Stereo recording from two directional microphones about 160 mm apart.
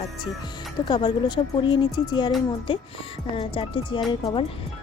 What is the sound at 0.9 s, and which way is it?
Speech, 30° left (ahead or behind).